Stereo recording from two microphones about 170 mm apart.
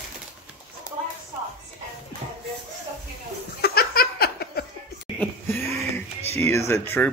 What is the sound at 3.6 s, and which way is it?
Laughter, 65° left (ahead or behind).